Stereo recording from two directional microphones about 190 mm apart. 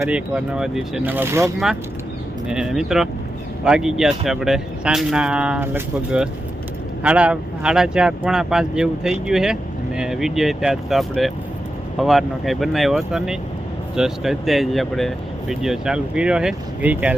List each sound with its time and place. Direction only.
0.0 s speech: 5° right (ahead or behind)
2.5 s speech: 5° right (ahead or behind)